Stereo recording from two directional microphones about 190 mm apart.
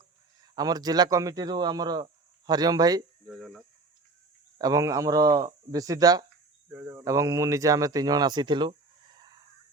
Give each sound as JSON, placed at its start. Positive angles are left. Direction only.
{"t": 0.5, "sound": "speech", "side_deg": -20}
{"t": 3.2, "sound": "speech", "side_deg": 0}
{"t": 4.5, "sound": "speech", "side_deg": -20}
{"t": 6.7, "sound": "speech", "side_deg": -10}